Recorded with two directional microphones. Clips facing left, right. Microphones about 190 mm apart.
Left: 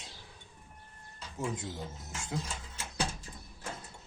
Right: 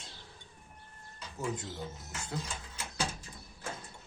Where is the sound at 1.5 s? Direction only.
20° left (ahead or behind).